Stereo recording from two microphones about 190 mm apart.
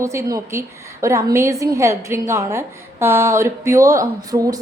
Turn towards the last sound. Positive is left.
turn(degrees=-20)  # may be behind; listen again after turning